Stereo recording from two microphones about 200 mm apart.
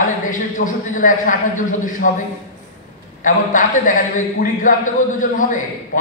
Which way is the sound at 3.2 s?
40° left (ahead or behind).